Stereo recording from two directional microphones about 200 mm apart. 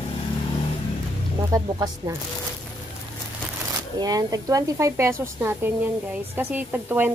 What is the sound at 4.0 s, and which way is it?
A woman's voice, 20° right (ahead or behind).